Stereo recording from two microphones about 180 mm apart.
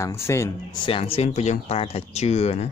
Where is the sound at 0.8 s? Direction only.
30° left (ahead or behind).